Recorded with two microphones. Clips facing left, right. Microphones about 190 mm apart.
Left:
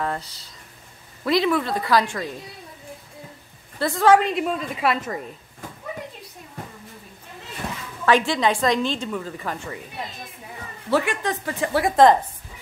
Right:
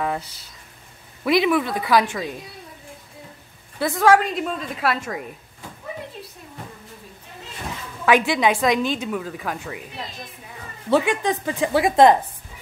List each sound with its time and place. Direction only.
1.2 s a woman's voice: 10° right (ahead or behind)
3.8 s a woman's voice: 5° right (ahead or behind)
8.0 s a woman's voice: 10° right (ahead or behind)
10.9 s a woman's voice: 20° right (ahead or behind)